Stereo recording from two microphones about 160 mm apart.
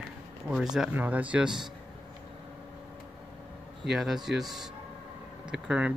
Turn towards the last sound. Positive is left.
turn(degrees=-5)  # may be behind; listen again after turning